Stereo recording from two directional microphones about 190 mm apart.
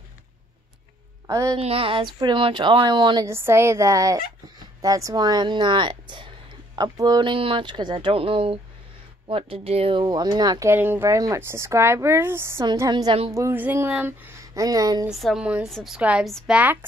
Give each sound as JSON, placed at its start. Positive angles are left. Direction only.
{"t": 1.2, "sound": "a woman's voice", "side_deg": -15}
{"t": 1.6, "sound": "speech", "side_deg": -30}
{"t": 3.3, "sound": "speech", "side_deg": -15}
{"t": 13.3, "sound": "speech", "side_deg": -15}
{"t": 15.0, "sound": "a woman's voice", "side_deg": 0}